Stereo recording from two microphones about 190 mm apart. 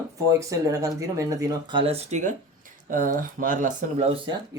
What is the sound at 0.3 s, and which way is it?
Speech, 15° right (ahead or behind).